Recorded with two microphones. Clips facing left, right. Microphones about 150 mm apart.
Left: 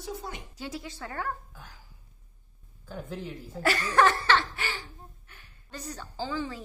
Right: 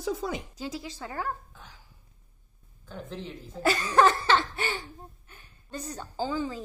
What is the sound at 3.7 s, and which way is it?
Laughter, 20° right (ahead or behind).